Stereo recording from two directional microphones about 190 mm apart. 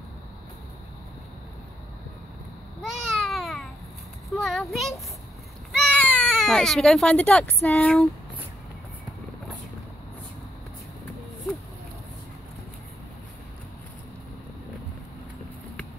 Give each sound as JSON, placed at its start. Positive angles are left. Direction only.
{"t": 2.8, "sound": "babbling", "side_deg": 0}
{"t": 4.3, "sound": "a sound", "side_deg": 0}
{"t": 5.7, "sound": "baby cry", "side_deg": 0}
{"t": 7.6, "sound": "speech", "side_deg": 5}